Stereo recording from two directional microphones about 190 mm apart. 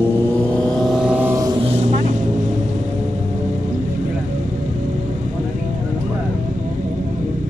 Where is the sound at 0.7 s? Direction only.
Centre (ahead or behind); by 2.0 s 30° right (ahead or behind).